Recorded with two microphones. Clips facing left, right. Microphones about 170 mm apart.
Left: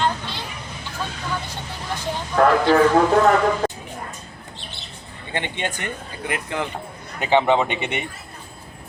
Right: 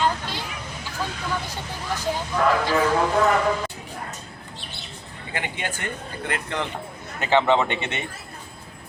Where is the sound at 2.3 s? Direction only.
55° left (ahead or behind).